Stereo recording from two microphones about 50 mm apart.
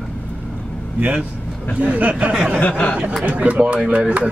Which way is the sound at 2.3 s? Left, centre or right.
Centre.